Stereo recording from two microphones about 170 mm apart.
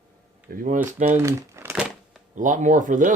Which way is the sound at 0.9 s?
40° right (ahead or behind).